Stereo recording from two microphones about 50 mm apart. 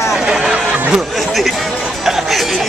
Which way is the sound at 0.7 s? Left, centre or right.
Right.